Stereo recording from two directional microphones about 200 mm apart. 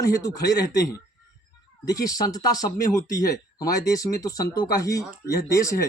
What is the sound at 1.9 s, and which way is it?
A man's voice, 15° left (ahead or behind).